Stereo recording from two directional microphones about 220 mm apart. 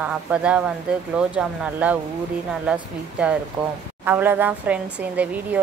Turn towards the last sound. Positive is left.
turn(degrees=-5)  # may be behind; listen again after turning